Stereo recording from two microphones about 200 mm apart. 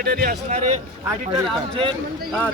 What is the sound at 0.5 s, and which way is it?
Speech, 35° right (ahead or behind).